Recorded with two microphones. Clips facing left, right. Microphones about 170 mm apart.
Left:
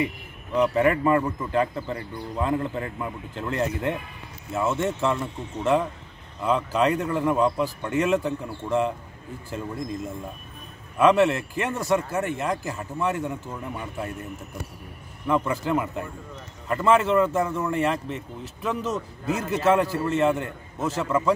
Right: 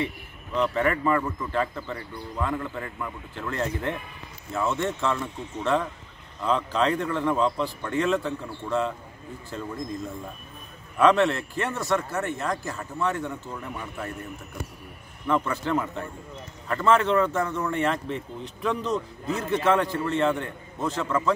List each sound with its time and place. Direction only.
0.6 s speech: 10° left (ahead or behind)
11.0 s speech: 10° left (ahead or behind)
15.2 s speech: 10° left (ahead or behind)